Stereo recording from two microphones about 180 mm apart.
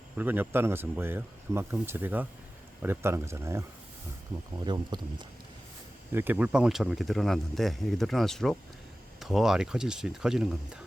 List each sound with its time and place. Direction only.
0.2 s speech: 10° right (ahead or behind)
4.6 s speech: 25° right (ahead or behind)
6.1 s speech: 10° right (ahead or behind)